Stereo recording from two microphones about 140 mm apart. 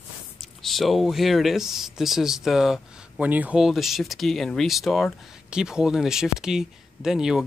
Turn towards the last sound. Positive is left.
turn(degrees=-5)  # may be behind; listen again after turning